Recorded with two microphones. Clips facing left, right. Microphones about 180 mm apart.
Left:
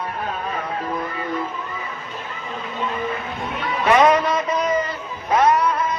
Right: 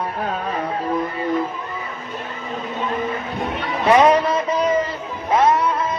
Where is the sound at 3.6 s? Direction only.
30° right (ahead or behind).